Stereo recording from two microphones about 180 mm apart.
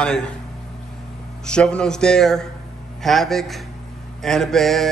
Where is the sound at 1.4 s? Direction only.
5° left (ahead or behind).